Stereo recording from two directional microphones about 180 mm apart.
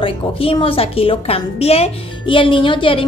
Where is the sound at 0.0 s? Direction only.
30° left (ahead or behind).